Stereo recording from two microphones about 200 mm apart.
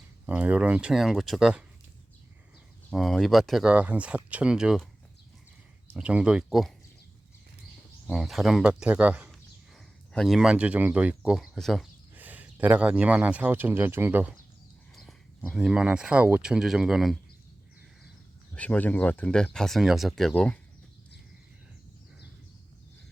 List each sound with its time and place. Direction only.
0.3 s speech: 10° right (ahead or behind)
2.9 s speech: centre (ahead or behind)
5.9 s speech: 5° right (ahead or behind)
8.0 s speech: centre (ahead or behind)
14.9 s speech: centre (ahead or behind)
18.5 s speech: 5° left (ahead or behind)